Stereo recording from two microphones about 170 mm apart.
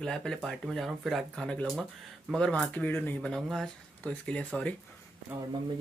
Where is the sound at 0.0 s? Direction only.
5° left (ahead or behind).